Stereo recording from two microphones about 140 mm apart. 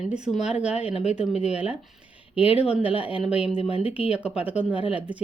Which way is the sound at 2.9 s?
40° left (ahead or behind).